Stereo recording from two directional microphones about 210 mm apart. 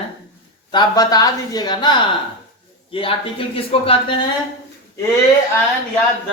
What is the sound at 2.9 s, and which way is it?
Speech, 25° left (ahead or behind).